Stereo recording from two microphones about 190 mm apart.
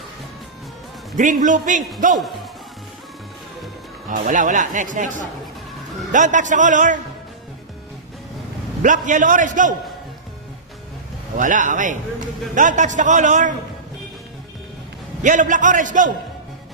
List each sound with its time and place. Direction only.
1.1 s a man's voice: 40° right (ahead or behind)
4.1 s a man's voice: 45° right (ahead or behind)
8.8 s speech: 40° right (ahead or behind)
11.3 s a man's voice: 40° right (ahead or behind)
15.2 s speech: 45° right (ahead or behind)